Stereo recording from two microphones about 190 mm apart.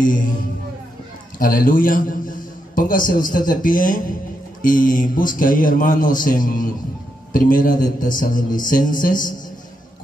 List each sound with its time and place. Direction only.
0.0 s a man's voice: 45° left (ahead or behind)
1.4 s a man's voice: 45° left (ahead or behind)